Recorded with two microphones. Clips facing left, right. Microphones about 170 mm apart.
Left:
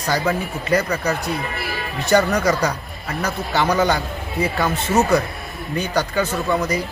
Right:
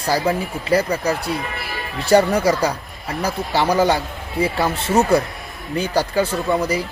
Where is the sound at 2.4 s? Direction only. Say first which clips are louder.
Right 1 dB; 30° right (ahead or behind).